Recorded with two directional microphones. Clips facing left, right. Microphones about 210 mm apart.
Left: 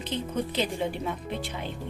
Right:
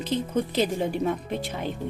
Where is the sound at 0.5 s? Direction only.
45° right (ahead or behind).